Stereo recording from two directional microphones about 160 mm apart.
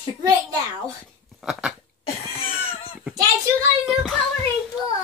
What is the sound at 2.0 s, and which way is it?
Cough, 35° left (ahead or behind).